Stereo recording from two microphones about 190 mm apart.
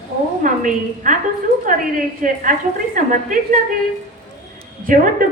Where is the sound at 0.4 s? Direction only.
45° right (ahead or behind).